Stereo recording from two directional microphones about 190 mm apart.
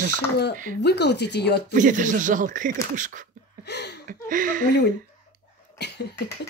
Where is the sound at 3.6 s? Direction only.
60° left (ahead or behind).